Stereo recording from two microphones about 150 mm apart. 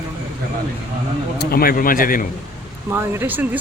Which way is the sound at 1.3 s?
85° left.